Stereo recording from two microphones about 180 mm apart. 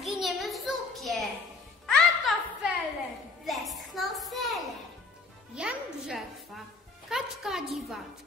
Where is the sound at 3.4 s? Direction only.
Centre (ahead or behind).